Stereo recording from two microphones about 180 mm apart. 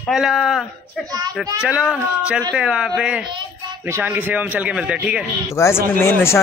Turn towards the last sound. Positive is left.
turn(degrees=15)  # may be behind; listen again after turning